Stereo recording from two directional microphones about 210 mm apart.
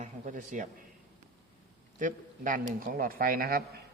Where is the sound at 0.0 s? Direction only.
40° right (ahead or behind).